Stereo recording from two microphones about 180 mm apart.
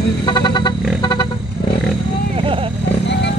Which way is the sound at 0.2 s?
25° left (ahead or behind).